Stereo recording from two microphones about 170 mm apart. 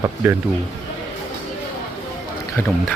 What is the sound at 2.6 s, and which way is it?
Speech, 10° left (ahead or behind).